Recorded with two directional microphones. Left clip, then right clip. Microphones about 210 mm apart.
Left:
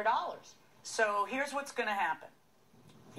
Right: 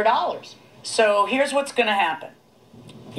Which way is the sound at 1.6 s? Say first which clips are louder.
Right 13 dB; 45° right (ahead or behind).